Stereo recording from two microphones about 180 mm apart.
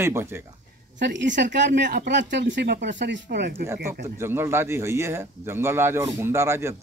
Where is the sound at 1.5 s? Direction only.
75° right (ahead or behind).